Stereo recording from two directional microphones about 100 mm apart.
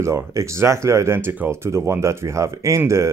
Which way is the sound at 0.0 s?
30° right (ahead or behind).